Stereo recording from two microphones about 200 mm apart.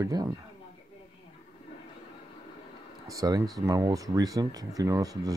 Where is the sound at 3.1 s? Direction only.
15° right (ahead or behind).